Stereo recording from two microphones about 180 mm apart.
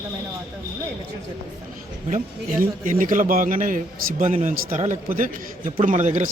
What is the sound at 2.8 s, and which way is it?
A man's voice, 50° right (ahead or behind).